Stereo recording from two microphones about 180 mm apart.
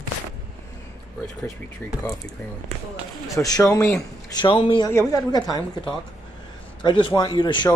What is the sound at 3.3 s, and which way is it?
A woman's voice, 20° left (ahead or behind).